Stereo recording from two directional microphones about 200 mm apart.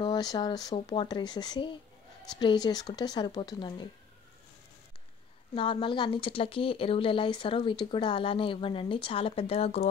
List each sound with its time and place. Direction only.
0.0 s speech: 20° left (ahead or behind)
5.5 s speech: 25° left (ahead or behind)